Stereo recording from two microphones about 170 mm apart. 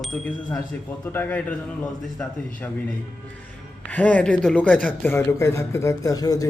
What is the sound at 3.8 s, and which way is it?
Speech, 10° left (ahead or behind).